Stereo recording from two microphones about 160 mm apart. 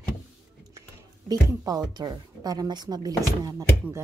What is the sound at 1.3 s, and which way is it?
A woman's voice, 25° right (ahead or behind).